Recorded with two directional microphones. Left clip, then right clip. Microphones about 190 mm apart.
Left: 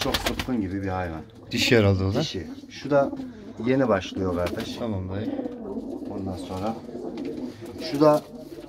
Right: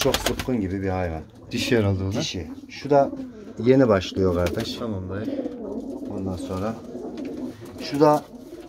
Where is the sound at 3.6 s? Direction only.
50° right (ahead or behind).